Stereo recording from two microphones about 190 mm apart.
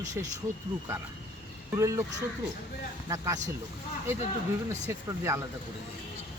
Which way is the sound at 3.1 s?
15° right (ahead or behind).